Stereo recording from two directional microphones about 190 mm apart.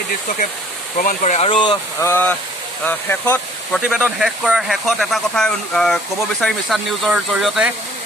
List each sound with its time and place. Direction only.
0.9 s speech: 40° left (ahead or behind)
2.0 s speech: 10° left (ahead or behind)